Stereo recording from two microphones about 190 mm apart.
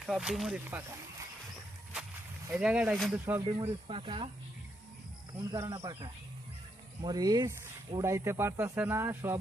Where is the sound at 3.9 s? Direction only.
25° right (ahead or behind).